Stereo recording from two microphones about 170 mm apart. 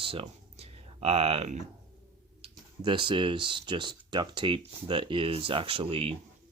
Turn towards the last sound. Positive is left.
turn(degrees=-35)  # may be behind; listen again after turning